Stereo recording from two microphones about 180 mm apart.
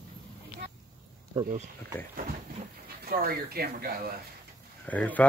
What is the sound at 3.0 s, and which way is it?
Speech, 55° right (ahead or behind).